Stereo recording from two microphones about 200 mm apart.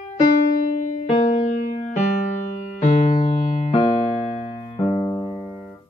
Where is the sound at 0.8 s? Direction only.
35° left (ahead or behind).